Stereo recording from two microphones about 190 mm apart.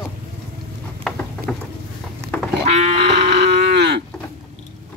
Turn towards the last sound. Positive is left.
turn(degrees=-60)  # may be behind; listen again after turning